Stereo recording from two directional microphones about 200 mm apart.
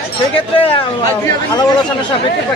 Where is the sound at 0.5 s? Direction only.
25° left (ahead or behind).